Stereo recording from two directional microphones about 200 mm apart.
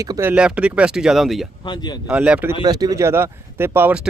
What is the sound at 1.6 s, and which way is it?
Speech, 20° left (ahead or behind).